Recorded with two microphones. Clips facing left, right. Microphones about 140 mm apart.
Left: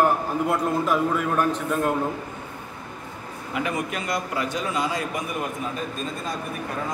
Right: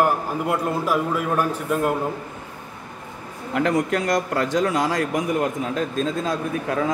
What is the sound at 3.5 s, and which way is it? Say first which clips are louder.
A man's voice: right 7 dB; 85° right.